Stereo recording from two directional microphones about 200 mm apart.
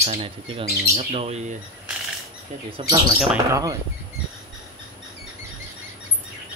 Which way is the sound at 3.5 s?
15° right (ahead or behind).